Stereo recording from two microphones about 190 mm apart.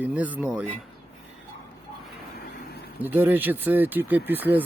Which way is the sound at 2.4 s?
55° left (ahead or behind).